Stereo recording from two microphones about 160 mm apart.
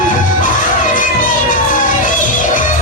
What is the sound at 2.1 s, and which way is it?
Music, 55° left (ahead or behind).